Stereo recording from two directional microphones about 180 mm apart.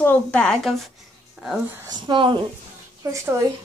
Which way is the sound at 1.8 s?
25° right (ahead or behind).